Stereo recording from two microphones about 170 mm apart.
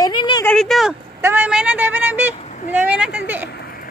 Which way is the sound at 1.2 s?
10° right (ahead or behind).